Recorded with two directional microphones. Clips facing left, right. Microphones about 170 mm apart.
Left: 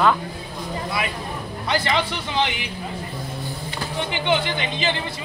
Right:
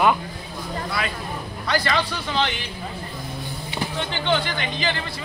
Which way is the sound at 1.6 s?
20° left (ahead or behind).